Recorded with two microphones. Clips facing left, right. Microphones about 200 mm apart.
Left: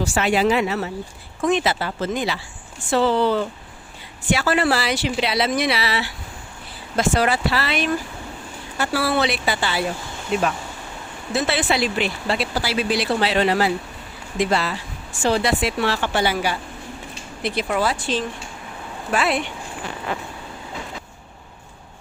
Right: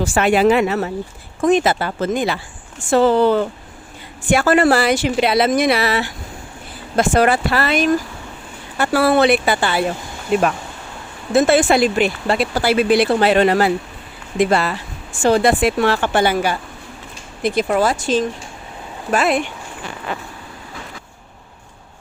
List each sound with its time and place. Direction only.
0.0 s speech: 55° right (ahead or behind)
11.3 s speech: 50° right (ahead or behind)